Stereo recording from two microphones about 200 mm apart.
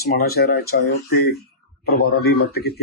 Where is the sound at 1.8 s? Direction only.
50° left (ahead or behind).